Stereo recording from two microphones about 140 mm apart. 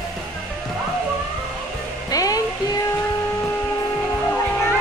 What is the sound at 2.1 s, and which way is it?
Music, 25° left (ahead or behind).